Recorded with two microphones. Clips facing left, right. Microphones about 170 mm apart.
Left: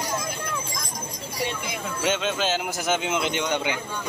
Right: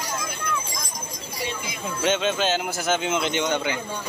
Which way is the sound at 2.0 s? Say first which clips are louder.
Right 3 dB; 5° left (ahead or behind).